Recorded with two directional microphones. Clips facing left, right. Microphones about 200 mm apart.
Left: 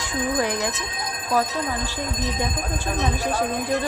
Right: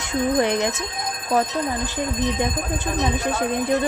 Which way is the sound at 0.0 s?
25° right (ahead or behind).